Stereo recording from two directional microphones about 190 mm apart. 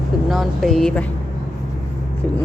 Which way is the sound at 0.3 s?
Centre (ahead or behind).